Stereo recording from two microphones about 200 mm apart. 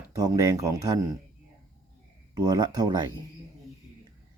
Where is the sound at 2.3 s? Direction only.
20° right (ahead or behind).